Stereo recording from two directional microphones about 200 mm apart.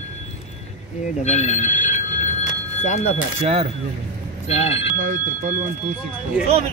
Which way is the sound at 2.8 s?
35° left (ahead or behind).